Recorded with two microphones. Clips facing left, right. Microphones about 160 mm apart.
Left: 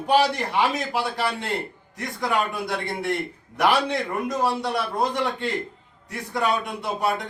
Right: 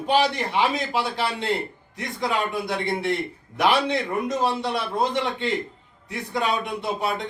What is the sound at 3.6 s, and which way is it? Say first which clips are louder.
A man's voice: even; 20° right (ahead or behind).